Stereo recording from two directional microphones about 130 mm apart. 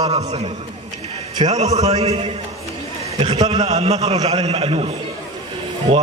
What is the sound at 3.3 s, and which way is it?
A man's voice, 55° right (ahead or behind).